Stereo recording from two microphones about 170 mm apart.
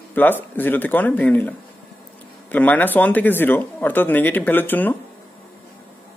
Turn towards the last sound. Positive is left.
turn(degrees=10)  # may be behind; listen again after turning